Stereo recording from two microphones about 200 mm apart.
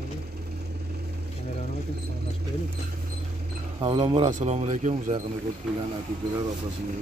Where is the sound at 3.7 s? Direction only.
25° right (ahead or behind).